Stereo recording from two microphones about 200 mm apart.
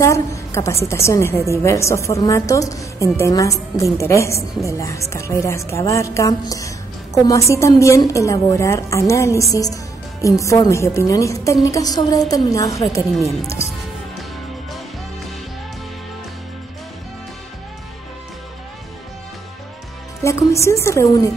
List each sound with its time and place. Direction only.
0.0 s a woman's voice: 15° left (ahead or behind)
13.1 s a woman's voice: centre (ahead or behind)
20.2 s a woman's voice: 15° left (ahead or behind)